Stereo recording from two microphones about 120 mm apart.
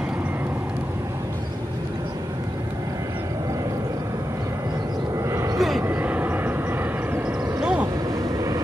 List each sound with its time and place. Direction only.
5.3 s vehicle: 25° right (ahead or behind)